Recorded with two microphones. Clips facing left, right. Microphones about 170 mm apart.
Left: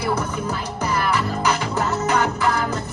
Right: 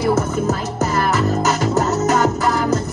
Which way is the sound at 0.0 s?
45° right (ahead or behind).